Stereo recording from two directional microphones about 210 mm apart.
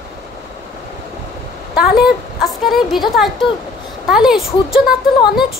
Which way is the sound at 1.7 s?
Centre (ahead or behind).